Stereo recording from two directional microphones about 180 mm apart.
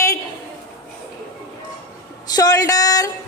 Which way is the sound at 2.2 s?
20° left (ahead or behind).